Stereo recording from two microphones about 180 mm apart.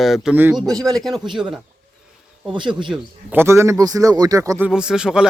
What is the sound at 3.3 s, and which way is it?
A man's voice, 15° right (ahead or behind).